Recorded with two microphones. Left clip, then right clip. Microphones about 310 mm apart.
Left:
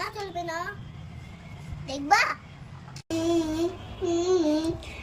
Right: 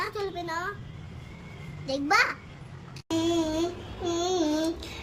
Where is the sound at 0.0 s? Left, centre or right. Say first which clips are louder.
Right 1 dB; centre.